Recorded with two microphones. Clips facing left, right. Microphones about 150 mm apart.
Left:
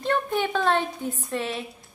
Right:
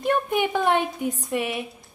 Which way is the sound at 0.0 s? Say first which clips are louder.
Right 2 dB; 15° right (ahead or behind).